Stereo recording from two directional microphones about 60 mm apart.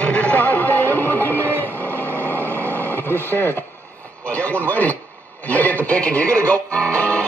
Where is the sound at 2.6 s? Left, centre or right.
Left.